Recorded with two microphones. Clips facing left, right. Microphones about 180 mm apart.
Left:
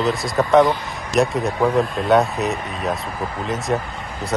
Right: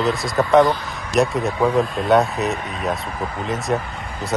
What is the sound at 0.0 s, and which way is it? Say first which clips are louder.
Speech: even; centre (ahead or behind).